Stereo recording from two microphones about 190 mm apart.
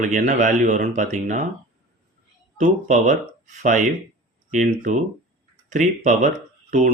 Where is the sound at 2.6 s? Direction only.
40° right (ahead or behind).